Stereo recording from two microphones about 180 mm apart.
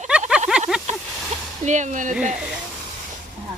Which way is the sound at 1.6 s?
40° right (ahead or behind).